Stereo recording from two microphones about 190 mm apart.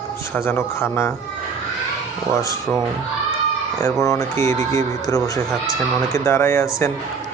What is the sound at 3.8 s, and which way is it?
Speech, 15° left (ahead or behind).